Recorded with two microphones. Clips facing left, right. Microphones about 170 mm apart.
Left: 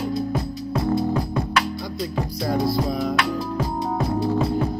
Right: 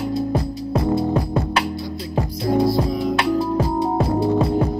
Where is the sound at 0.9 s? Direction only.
30° right (ahead or behind).